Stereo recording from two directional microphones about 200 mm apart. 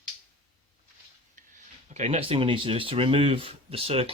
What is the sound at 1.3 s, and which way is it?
Speech, 40° right (ahead or behind).